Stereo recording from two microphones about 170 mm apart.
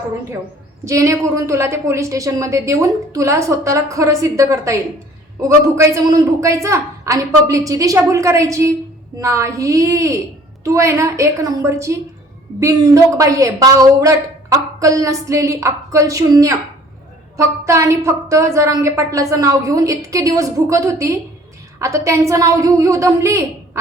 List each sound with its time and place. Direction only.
0.9 s a woman's voice: 15° right (ahead or behind)